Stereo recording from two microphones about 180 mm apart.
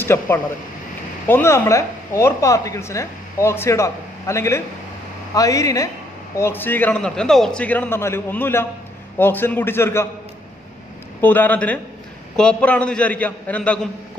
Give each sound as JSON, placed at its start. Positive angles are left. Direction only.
{"t": 0.0, "sound": "speech", "side_deg": 15}
{"t": 11.1, "sound": "speech", "side_deg": 10}